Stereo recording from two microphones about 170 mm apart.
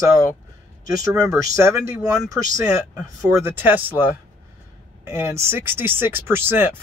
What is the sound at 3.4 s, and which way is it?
Speech, 10° right (ahead or behind).